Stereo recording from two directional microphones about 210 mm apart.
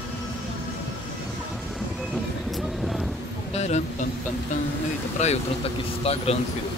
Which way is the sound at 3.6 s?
30° left (ahead or behind).